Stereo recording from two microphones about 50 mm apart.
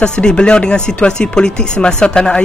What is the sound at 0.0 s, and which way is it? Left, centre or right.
Speech, centre.